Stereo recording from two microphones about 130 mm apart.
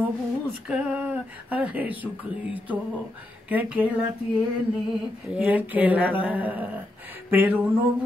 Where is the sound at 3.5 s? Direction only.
10° right (ahead or behind).